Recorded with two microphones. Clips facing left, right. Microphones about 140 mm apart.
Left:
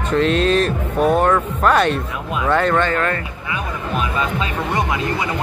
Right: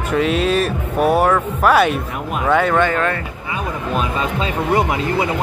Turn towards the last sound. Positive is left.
turn(degrees=-30)  # may be behind; listen again after turning